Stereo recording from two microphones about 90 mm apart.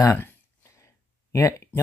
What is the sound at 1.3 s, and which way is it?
Speech, 35° left (ahead or behind).